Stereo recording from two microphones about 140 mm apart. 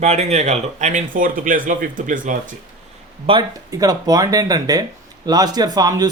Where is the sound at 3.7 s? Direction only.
25° right (ahead or behind).